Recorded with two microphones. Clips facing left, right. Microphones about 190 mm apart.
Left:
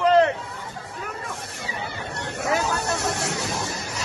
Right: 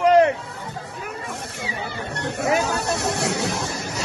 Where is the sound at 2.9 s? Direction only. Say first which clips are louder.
Right 3 dB; 70° right (ahead or behind).